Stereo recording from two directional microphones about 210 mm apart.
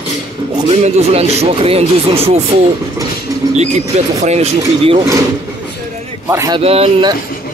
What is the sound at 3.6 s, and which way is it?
Speech, 30° right (ahead or behind).